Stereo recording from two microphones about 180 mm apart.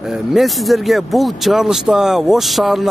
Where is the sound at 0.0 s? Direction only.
Centre (ahead or behind).